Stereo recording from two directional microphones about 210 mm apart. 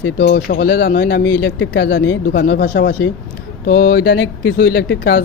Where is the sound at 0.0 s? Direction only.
55° left (ahead or behind).